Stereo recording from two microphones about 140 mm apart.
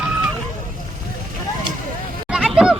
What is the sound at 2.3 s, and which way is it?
Vehicle, centre (ahead or behind).